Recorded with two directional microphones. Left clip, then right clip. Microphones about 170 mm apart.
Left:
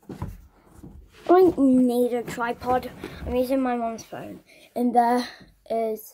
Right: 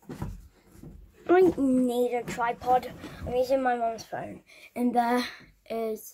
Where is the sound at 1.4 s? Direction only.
10° left (ahead or behind).